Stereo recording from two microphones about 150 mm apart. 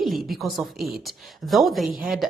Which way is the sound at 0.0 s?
Centre (ahead or behind).